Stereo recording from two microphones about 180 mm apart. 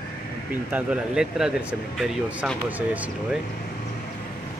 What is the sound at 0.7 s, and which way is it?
Speech, 10° right (ahead or behind).